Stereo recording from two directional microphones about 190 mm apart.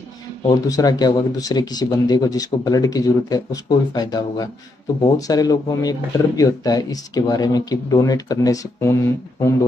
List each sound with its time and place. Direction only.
0.5 s speech: 20° left (ahead or behind)